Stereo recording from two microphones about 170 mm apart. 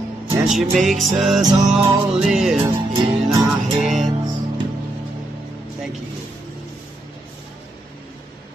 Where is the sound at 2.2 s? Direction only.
5° right (ahead or behind).